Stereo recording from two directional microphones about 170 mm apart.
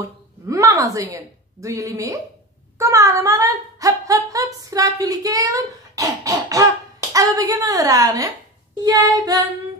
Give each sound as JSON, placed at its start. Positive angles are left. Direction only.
{"t": 0.0, "sound": "a woman's voice", "side_deg": -20}